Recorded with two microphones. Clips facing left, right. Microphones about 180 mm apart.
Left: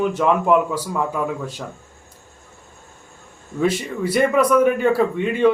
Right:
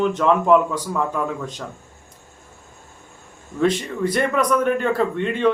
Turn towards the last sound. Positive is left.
turn(degrees=10)  # may be behind; listen again after turning